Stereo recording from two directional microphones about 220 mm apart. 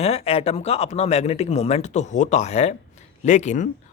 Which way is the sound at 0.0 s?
30° left (ahead or behind).